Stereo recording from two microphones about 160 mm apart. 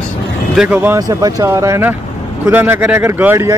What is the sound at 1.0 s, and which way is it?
Speech, 20° right (ahead or behind).